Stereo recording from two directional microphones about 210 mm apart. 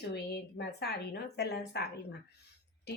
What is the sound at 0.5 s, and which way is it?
A woman's voice, 50° left (ahead or behind).